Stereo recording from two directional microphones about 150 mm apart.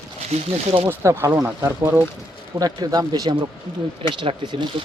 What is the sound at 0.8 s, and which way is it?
Speech, 20° right (ahead or behind).